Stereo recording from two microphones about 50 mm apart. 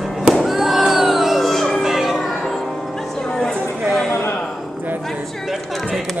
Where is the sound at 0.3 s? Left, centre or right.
Centre.